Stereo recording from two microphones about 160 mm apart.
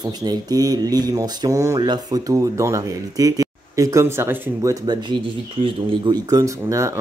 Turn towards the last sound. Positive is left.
turn(degrees=-20)  # may be behind; listen again after turning